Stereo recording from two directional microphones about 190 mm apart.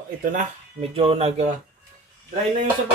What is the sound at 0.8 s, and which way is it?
Speech, 30° right (ahead or behind).